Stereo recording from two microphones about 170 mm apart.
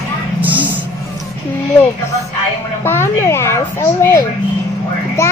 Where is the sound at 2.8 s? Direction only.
15° left (ahead or behind).